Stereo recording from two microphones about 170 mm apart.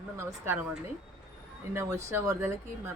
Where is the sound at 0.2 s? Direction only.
15° right (ahead or behind).